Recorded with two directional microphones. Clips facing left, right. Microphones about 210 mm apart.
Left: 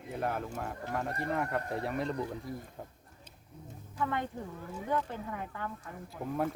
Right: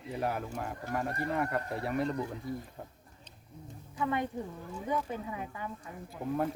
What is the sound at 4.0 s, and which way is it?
Speech, 15° right (ahead or behind).